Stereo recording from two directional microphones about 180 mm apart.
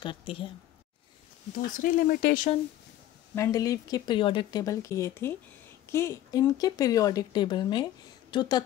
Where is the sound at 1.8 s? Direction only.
50° left (ahead or behind).